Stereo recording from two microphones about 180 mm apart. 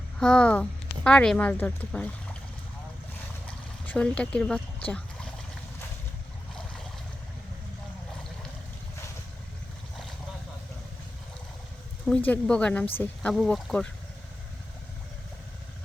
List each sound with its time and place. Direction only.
0.2 s a woman's voice: 5° left (ahead or behind)
3.4 s a sound: 5° left (ahead or behind)
12.0 s a woman's voice: 5° left (ahead or behind)